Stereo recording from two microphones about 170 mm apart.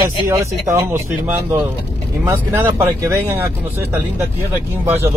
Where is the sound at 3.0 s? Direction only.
15° right (ahead or behind).